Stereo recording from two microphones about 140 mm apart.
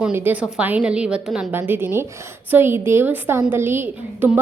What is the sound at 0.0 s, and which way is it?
A woman's voice, 15° right (ahead or behind).